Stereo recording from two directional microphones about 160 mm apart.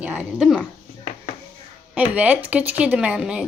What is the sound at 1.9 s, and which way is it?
Speech, 10° right (ahead or behind).